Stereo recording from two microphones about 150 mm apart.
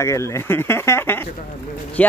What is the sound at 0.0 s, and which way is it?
Speech, 20° left (ahead or behind).